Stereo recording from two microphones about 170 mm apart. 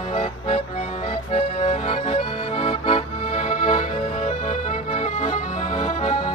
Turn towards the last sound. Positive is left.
turn(degrees=40)  # may be behind; listen again after turning